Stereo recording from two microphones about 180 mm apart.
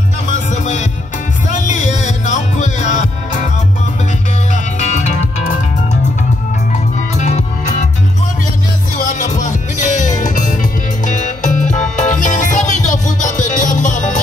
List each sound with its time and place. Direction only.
0.3 s music: 40° left (ahead or behind)
4.7 s music: 40° left (ahead or behind)
7.2 s music: 40° left (ahead or behind)
8.9 s music: 45° left (ahead or behind)